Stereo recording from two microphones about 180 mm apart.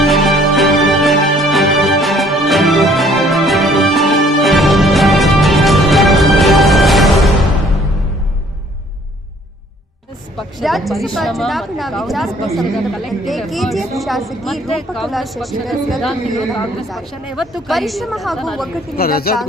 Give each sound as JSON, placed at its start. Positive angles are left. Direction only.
{"t": 0.0, "sound": "music", "side_deg": 0}
{"t": 10.3, "sound": "a woman's voice", "side_deg": 0}
{"t": 18.9, "sound": "a woman's voice", "side_deg": 55}